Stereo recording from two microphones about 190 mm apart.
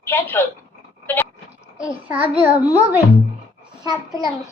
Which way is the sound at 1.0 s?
10° left (ahead or behind).